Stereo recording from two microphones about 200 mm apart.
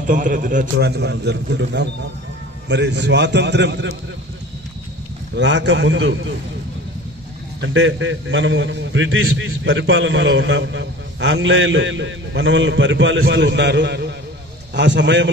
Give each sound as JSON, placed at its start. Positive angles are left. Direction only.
{"t": 0.0, "sound": "a man's voice", "side_deg": -40}
{"t": 0.7, "sound": "a man's voice", "side_deg": -55}
{"t": 5.3, "sound": "a man's voice", "side_deg": -60}
{"t": 7.6, "sound": "a man's voice", "side_deg": -70}